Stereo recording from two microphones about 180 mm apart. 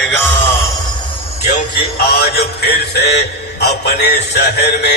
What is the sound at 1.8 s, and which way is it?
Music, 60° left (ahead or behind).